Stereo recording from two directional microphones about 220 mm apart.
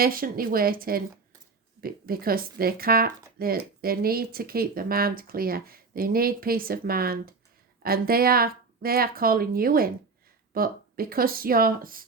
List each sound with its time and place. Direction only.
0.0 s speech: 40° right (ahead or behind)